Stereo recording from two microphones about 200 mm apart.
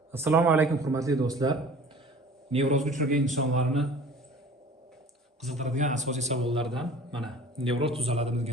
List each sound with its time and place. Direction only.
0.1 s a man's voice: 15° right (ahead or behind)
2.5 s a man's voice: 30° right (ahead or behind)
3.7 s a man's voice: centre (ahead or behind)
5.5 s a man's voice: 35° right (ahead or behind)
6.6 s a man's voice: centre (ahead or behind)
7.6 s a man's voice: 25° right (ahead or behind)